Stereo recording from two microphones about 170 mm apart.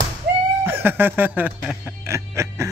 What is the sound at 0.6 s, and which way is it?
Music, 15° right (ahead or behind).